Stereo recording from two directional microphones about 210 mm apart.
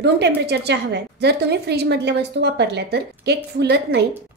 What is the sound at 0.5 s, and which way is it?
A woman's voice, 55° right (ahead or behind).